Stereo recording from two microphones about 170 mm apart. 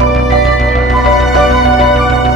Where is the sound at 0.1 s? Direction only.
Centre (ahead or behind).